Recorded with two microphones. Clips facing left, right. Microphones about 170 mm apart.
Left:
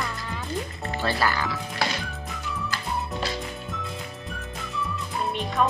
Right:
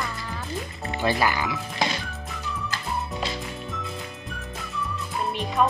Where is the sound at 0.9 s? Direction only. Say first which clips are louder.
Right 2 dB; 15° right (ahead or behind).